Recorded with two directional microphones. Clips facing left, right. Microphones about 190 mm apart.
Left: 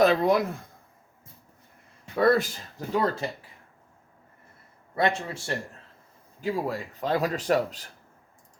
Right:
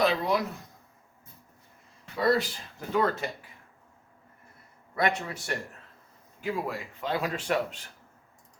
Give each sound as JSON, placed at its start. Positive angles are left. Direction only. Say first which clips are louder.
{"t": 0.0, "sound": "speech", "louder": "left 5 dB", "side_deg": 50}
{"t": 2.1, "sound": "speech", "louder": "left 4 dB", "side_deg": 55}
{"t": 2.7, "sound": "speech", "louder": "left 1 dB", "side_deg": 35}
{"t": 4.9, "sound": "speech", "louder": "left 2 dB", "side_deg": 30}